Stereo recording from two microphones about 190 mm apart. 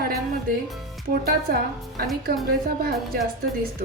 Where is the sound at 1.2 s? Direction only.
50° right (ahead or behind).